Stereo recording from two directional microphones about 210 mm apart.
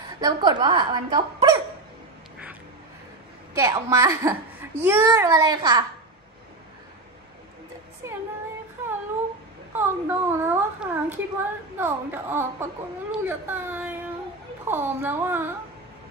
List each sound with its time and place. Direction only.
0.2 s speech: 20° right (ahead or behind)
3.5 s a child's voice: 15° right (ahead or behind)
9.8 s a child's voice: 10° right (ahead or behind)